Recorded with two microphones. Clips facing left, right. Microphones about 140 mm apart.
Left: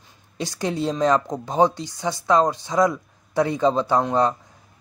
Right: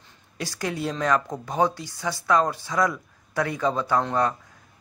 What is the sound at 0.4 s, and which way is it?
A man's voice, 20° left (ahead or behind).